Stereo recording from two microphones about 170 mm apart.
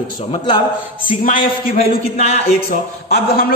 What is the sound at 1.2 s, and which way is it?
Speech, 55° left (ahead or behind).